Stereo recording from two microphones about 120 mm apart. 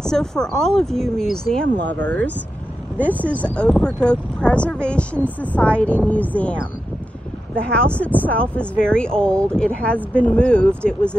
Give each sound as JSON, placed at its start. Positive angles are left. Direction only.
{"t": 0.0, "sound": "speech", "side_deg": 5}